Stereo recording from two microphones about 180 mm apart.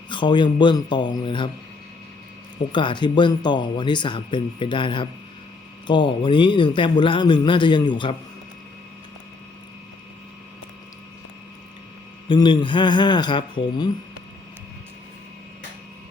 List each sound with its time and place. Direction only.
0.1 s speech: 25° left (ahead or behind)
2.7 s speech: 25° left (ahead or behind)
12.3 s speech: 25° left (ahead or behind)